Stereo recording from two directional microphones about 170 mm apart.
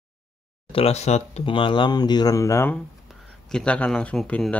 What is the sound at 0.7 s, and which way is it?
Speech, 35° left (ahead or behind).